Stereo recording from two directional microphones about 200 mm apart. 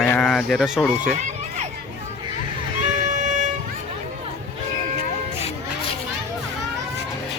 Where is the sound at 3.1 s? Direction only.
40° right (ahead or behind).